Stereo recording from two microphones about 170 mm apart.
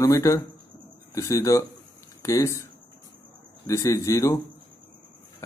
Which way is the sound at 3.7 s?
20° left (ahead or behind).